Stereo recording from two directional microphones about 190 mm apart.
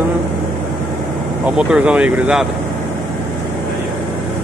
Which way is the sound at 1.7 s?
5° right (ahead or behind).